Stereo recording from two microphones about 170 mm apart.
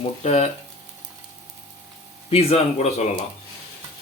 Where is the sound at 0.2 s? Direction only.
40° left (ahead or behind).